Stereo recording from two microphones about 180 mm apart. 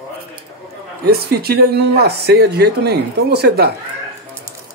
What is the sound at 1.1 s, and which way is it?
Speech, 60° right (ahead or behind).